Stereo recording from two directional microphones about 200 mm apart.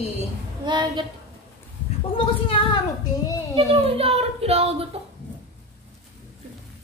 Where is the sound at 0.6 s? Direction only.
20° right (ahead or behind).